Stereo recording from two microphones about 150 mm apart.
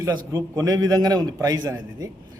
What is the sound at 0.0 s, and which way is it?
A man's voice, 25° right (ahead or behind).